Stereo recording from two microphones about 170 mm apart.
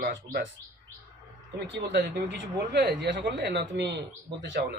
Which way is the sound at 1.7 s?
80° right.